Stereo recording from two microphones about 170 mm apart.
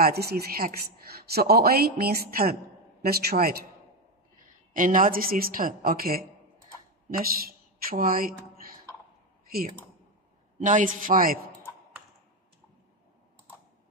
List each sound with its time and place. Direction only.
0.0 s a woman's voice: 65° right (ahead or behind)
4.7 s a woman's voice: 50° right (ahead or behind)
10.6 s speech: 50° right (ahead or behind)